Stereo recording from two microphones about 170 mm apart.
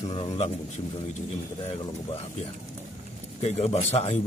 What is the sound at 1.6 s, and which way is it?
Speech, 35° left (ahead or behind).